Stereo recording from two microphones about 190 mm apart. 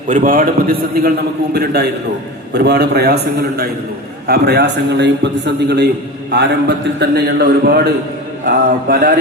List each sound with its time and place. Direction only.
0.1 s a man's voice: 45° right (ahead or behind)
4.3 s a man's voice: 60° right (ahead or behind)